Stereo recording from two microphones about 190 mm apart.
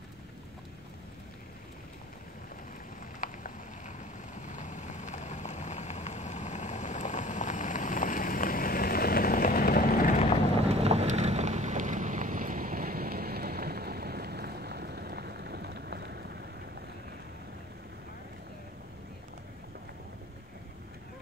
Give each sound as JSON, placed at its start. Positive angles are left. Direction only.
{"t": 3.2, "sound": "a sound", "side_deg": 45}
{"t": 4.4, "sound": "vehicle", "side_deg": 40}
{"t": 10.7, "sound": "boat", "side_deg": -35}